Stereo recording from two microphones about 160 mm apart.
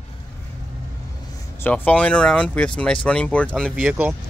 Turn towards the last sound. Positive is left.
turn(degrees=-10)  # may be behind; listen again after turning